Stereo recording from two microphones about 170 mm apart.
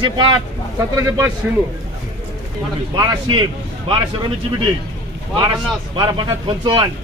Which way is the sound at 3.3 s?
30° right (ahead or behind).